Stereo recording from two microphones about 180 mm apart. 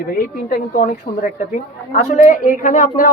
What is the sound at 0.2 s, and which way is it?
Speech, 50° left (ahead or behind).